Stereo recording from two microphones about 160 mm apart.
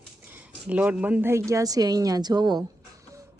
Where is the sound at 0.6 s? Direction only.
10° right (ahead or behind); by 2.6 s 25° right (ahead or behind).